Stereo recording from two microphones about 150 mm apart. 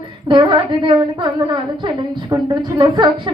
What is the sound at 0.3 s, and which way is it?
A woman's voice, 30° right (ahead or behind).